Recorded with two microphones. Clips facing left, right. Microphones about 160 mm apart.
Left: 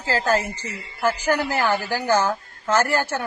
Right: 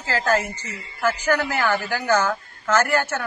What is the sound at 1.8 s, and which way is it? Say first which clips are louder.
Speech: even; 35° left (ahead or behind).